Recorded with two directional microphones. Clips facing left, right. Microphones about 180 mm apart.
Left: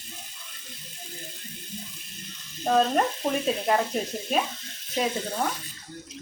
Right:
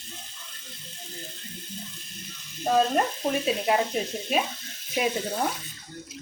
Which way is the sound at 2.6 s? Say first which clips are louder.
Even; 5° right (ahead or behind).